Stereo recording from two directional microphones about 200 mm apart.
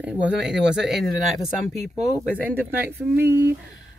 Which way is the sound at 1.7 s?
10° left (ahead or behind).